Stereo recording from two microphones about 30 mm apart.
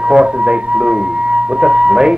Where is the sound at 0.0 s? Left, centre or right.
Right.